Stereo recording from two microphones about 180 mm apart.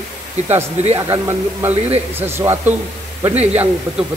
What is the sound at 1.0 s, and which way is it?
Speech, 15° right (ahead or behind).